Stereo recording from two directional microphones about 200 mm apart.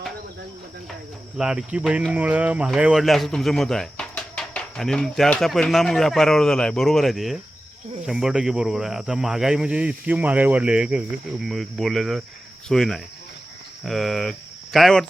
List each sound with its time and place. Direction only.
1.4 s speech: 5° right (ahead or behind)